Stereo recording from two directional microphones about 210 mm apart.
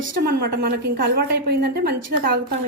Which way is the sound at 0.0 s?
50° right (ahead or behind).